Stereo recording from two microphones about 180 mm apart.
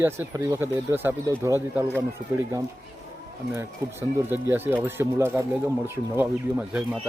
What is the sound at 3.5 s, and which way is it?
Speech, 10° right (ahead or behind).